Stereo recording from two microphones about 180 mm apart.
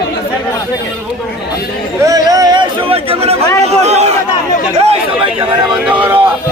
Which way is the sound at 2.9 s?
35° right (ahead or behind).